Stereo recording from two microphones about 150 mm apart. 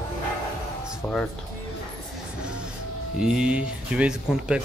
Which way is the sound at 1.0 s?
10° left (ahead or behind).